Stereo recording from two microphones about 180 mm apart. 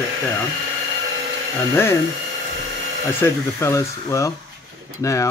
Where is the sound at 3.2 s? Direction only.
15° left (ahead or behind).